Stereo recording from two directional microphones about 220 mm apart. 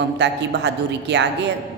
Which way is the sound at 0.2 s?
50° right (ahead or behind).